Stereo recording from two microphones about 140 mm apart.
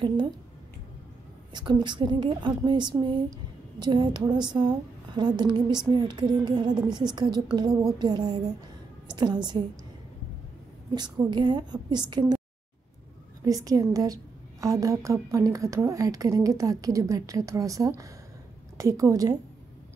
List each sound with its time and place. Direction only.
1.5 s a woman's voice: 35° right (ahead or behind)
11.2 s speech: 30° right (ahead or behind)
13.5 s a woman's voice: 25° right (ahead or behind)